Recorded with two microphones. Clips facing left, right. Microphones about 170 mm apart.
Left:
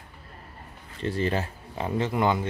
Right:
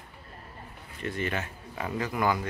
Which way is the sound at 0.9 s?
30° left (ahead or behind).